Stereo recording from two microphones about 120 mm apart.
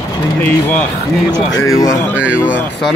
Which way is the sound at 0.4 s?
10° left (ahead or behind).